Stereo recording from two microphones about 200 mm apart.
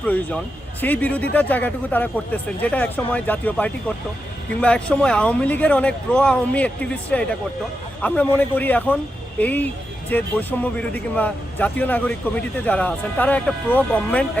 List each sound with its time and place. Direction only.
0.0 s speech: 5° left (ahead or behind)